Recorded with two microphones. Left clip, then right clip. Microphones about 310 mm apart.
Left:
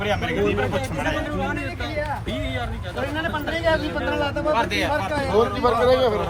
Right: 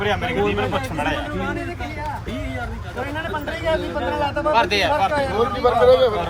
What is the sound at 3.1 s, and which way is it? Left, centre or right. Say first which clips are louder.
Speech: left 1 dB; centre.